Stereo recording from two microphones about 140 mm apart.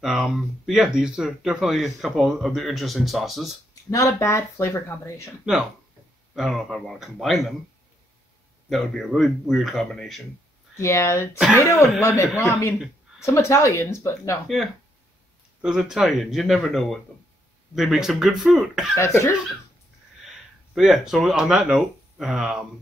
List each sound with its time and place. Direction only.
0.0 s speech: 5° right (ahead or behind)
3.9 s speech: 20° left (ahead or behind)
6.3 s speech: centre (ahead or behind)
8.6 s speech: centre (ahead or behind)
10.8 s speech: 20° left (ahead or behind)
15.6 s speech: 5° right (ahead or behind)
18.9 s speech: 20° left (ahead or behind)
20.2 s speech: 5° right (ahead or behind)